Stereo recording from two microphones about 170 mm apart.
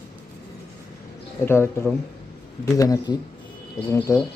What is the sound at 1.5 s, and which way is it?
Speech, 15° left (ahead or behind).